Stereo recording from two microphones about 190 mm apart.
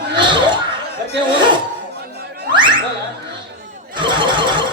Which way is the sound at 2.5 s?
25° right (ahead or behind).